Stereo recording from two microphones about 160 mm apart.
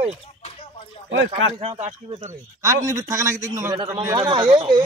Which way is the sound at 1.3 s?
40° right (ahead or behind).